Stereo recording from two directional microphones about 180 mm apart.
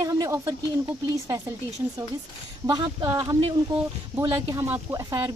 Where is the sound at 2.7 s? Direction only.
25° right (ahead or behind).